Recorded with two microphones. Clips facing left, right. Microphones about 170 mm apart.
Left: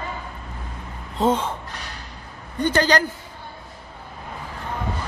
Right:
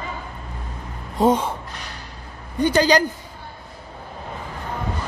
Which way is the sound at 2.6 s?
15° right (ahead or behind).